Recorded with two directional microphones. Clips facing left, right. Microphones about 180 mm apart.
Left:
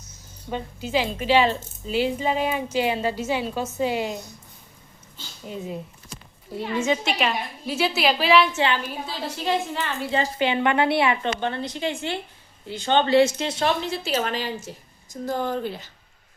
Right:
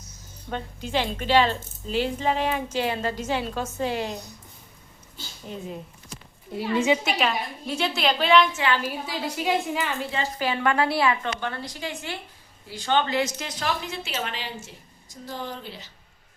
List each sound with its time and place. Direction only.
0.5 s speech: 5° left (ahead or behind)
6.7 s a woman's voice: 15° right (ahead or behind)
7.0 s a woman's voice: centre (ahead or behind)
8.5 s a woman's voice: 25° left (ahead or behind)
9.0 s a woman's voice: 10° right (ahead or behind)
10.1 s a woman's voice: 30° left (ahead or behind); by 15.9 s 50° left (ahead or behind)